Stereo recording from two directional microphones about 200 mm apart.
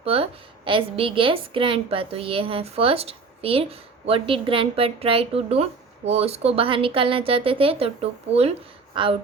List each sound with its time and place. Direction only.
0.0 s a woman's voice: 30° right (ahead or behind)